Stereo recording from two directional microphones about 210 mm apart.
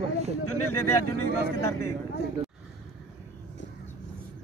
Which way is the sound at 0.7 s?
10° left (ahead or behind).